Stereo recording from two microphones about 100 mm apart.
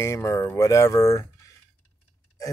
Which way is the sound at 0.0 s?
30° left (ahead or behind).